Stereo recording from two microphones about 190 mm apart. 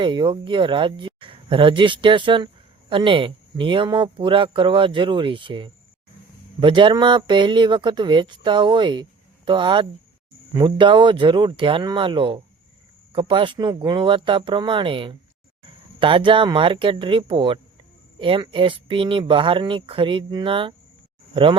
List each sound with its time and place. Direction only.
0.0 s speech: 25° right (ahead or behind)